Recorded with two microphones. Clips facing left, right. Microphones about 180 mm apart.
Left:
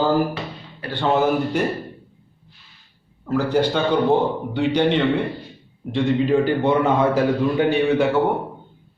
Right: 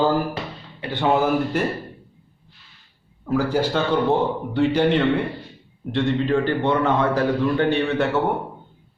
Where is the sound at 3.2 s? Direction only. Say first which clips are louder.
Left 1 dB; 5° right (ahead or behind).